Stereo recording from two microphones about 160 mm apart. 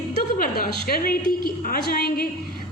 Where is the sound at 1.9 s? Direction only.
70° left (ahead or behind).